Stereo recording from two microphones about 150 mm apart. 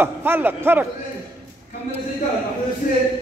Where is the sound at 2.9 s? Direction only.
65° left (ahead or behind).